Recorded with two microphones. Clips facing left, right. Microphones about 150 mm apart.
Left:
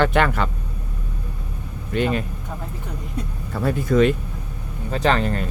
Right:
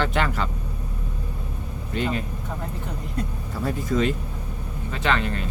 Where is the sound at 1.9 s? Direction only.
65° left (ahead or behind).